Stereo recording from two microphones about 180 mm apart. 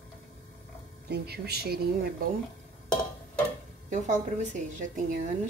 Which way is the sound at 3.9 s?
45° right (ahead or behind).